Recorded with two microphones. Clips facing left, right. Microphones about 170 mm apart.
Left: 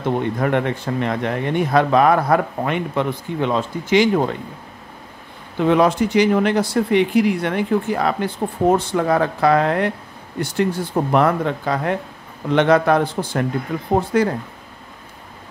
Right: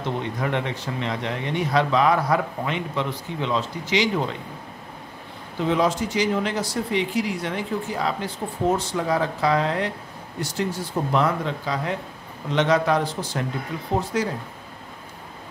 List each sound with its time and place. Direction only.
0.0 s speech: 55° left (ahead or behind)
5.6 s speech: 60° left (ahead or behind)